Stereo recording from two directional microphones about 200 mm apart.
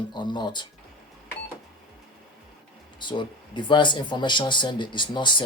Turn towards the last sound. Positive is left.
turn(degrees=25)  # may be behind; listen again after turning